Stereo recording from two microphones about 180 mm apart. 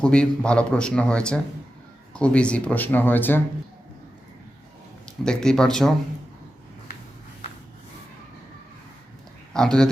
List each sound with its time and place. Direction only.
0.0 s a man's voice: 5° left (ahead or behind)
5.2 s a man's voice: 5° left (ahead or behind)
9.5 s speech: 5° left (ahead or behind)